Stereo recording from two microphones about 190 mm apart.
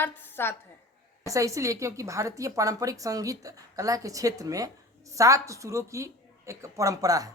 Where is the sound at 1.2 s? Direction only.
15° right (ahead or behind).